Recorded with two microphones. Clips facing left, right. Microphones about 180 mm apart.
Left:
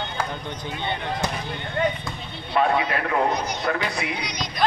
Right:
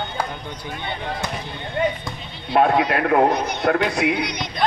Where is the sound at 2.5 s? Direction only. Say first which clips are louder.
Right 4 dB; 60° right (ahead or behind).